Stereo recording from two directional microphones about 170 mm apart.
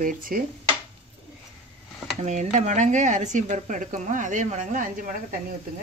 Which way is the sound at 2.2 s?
45° right (ahead or behind).